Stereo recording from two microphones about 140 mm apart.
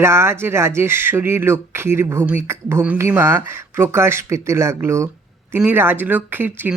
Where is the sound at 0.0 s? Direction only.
20° right (ahead or behind).